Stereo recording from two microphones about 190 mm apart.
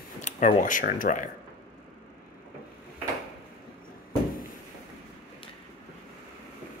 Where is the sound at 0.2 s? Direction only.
45° left (ahead or behind).